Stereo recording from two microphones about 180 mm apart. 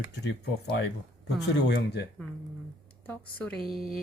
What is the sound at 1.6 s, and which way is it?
Speech, 70° left (ahead or behind).